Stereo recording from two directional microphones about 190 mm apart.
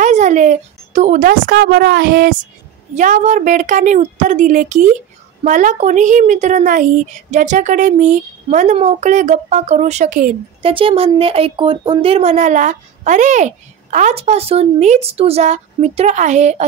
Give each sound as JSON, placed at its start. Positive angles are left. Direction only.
{"t": 0.0, "sound": "a woman's voice", "side_deg": -40}
{"t": 2.9, "sound": "speech", "side_deg": -40}
{"t": 10.6, "sound": "speech", "side_deg": -30}